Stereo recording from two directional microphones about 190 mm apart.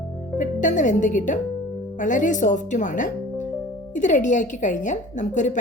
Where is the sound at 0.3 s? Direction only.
40° left (ahead or behind).